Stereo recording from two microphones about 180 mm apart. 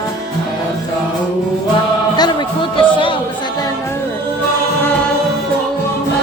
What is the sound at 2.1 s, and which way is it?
Music, 25° left (ahead or behind).